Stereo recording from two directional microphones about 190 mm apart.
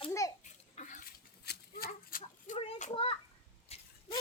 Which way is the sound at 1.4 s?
60° left (ahead or behind).